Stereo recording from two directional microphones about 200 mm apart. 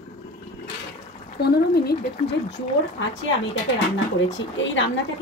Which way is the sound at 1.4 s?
55° left (ahead or behind).